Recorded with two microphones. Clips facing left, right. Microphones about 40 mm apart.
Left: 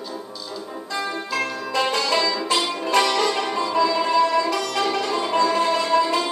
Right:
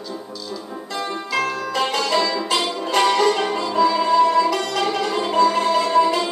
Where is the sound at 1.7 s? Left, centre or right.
Right.